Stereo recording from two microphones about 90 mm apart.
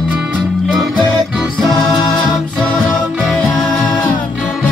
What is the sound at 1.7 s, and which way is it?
Music, 55° left (ahead or behind).